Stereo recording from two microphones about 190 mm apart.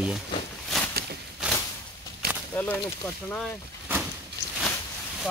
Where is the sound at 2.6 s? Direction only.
10° left (ahead or behind).